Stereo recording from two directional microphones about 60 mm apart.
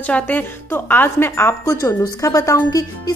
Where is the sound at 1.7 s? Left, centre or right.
Left.